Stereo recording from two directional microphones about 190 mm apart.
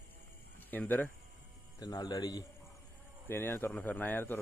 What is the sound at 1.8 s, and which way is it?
Speech, 20° left (ahead or behind).